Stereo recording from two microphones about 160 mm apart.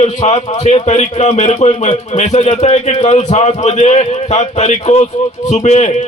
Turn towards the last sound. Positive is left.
turn(degrees=45)  # may be behind; listen again after turning